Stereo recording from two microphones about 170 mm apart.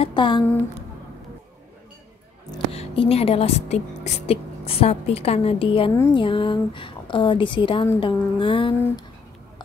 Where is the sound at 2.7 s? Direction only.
35° left (ahead or behind).